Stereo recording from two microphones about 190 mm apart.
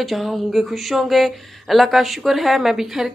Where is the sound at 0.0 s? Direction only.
Centre (ahead or behind).